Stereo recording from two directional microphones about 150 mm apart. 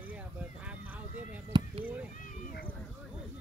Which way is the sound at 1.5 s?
30° right (ahead or behind).